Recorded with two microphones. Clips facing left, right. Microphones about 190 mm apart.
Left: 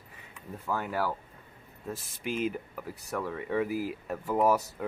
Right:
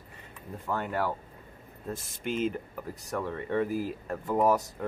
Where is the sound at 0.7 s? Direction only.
5° left (ahead or behind).